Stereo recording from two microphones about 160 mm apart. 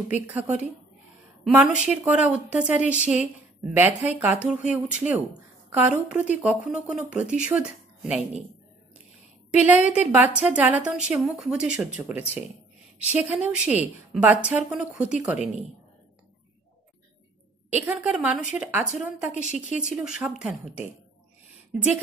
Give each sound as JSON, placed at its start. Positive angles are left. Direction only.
{"t": 0.1, "sound": "a woman's voice", "side_deg": -10}
{"t": 9.5, "sound": "a woman's voice", "side_deg": -10}
{"t": 17.8, "sound": "a woman's voice", "side_deg": -10}
{"t": 19.4, "sound": "speech", "side_deg": 50}
{"t": 19.8, "sound": "speech", "side_deg": -5}